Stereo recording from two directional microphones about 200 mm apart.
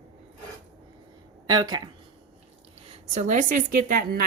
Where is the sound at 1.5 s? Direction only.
20° right (ahead or behind).